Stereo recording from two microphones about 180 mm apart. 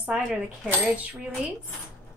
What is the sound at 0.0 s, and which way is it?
Speech, 10° right (ahead or behind).